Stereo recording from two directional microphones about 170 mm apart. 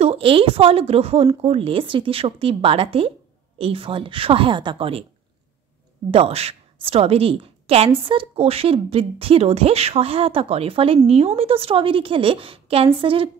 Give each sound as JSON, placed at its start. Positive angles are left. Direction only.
{"t": 0.0, "sound": "a woman's voice", "side_deg": -35}
{"t": 6.1, "sound": "a woman's voice", "side_deg": -35}